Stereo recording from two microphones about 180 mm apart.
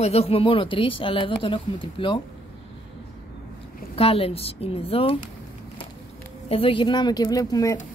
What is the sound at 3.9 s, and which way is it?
A woman's voice, 30° left (ahead or behind).